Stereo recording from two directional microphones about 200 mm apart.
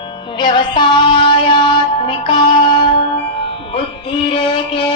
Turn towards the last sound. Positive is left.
turn(degrees=25)  # may be behind; listen again after turning